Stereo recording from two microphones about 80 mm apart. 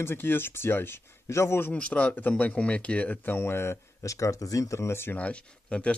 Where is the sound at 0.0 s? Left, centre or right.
Left.